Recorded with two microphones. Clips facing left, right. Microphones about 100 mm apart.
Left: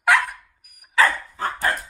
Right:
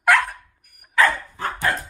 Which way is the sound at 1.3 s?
35° left (ahead or behind).